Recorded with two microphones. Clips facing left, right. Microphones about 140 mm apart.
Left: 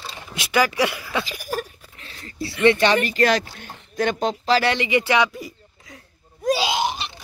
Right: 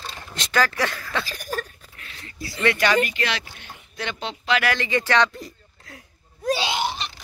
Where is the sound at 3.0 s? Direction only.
40° left (ahead or behind).